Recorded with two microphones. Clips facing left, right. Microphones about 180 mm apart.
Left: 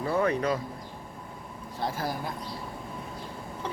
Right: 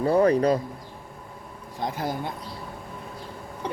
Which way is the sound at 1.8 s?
20° right (ahead or behind).